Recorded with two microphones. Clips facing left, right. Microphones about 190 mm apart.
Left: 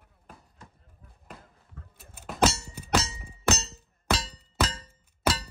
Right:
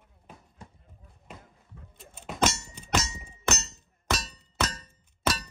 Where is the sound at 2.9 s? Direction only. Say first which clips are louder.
Left 2 dB; 30° left (ahead or behind).